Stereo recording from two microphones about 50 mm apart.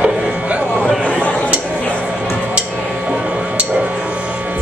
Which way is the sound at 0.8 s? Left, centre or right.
Left.